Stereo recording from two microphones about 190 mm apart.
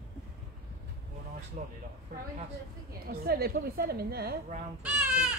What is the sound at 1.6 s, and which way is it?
Speech, 40° right (ahead or behind).